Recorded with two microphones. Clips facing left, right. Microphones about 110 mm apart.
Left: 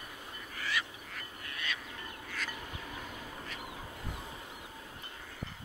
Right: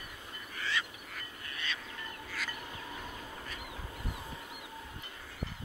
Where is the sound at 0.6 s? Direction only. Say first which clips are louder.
Even; 30° right (ahead or behind).